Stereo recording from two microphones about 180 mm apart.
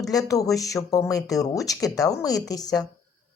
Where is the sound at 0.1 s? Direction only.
20° left (ahead or behind).